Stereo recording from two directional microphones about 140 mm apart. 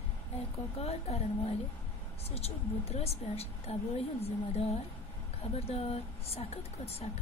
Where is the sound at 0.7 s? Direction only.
50° left (ahead or behind).